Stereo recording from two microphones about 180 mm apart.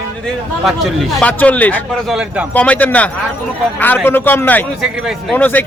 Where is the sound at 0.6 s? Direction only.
Centre (ahead or behind).